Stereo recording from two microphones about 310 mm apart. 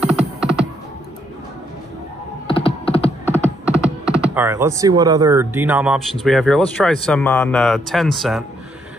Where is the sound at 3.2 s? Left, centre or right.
Centre.